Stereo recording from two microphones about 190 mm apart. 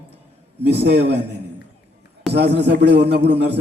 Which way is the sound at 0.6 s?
65° right (ahead or behind).